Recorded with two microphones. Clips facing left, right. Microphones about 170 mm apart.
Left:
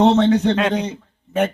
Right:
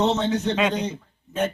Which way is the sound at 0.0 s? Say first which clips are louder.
Left 8 dB; 60° left (ahead or behind).